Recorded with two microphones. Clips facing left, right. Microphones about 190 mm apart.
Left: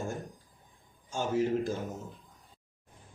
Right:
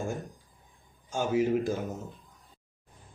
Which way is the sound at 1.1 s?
15° right (ahead or behind).